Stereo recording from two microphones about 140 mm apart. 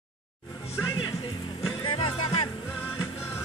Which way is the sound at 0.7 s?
25° left (ahead or behind).